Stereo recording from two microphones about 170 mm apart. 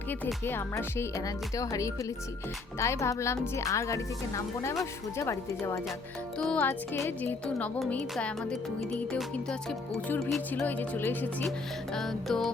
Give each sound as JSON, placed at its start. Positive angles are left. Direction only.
{"t": 0.4, "sound": "speech", "side_deg": 15}
{"t": 11.9, "sound": "music", "side_deg": 0}